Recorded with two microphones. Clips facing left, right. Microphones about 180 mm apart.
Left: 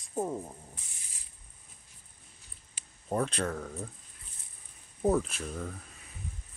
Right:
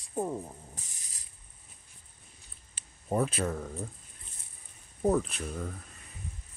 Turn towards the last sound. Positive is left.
turn(degrees=0)  # may be behind; listen again after turning